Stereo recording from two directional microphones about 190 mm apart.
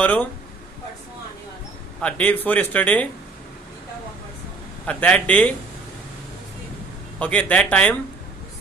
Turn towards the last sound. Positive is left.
turn(degrees=5)  # may be behind; listen again after turning